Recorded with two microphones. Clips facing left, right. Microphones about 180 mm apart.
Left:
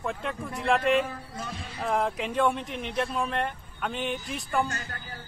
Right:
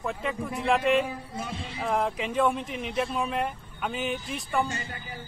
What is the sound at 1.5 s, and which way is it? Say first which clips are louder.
Speech: right 2 dB; 25° right (ahead or behind).